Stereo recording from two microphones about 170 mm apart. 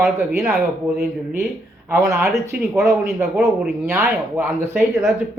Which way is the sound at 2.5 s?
65° right (ahead or behind).